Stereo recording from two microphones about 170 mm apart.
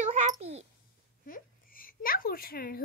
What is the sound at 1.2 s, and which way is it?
Speech, 55° left (ahead or behind).